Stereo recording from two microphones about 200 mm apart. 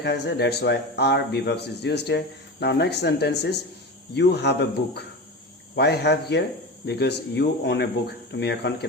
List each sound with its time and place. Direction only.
0.0 s a man's voice: 55° left (ahead or behind)
5.7 s a man's voice: 55° left (ahead or behind)